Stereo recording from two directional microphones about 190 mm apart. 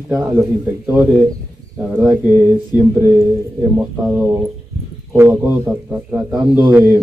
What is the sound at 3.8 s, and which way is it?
A man's voice, 10° right (ahead or behind).